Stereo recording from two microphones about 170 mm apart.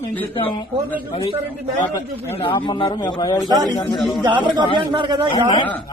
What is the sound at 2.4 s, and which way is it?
Speech, 30° left (ahead or behind).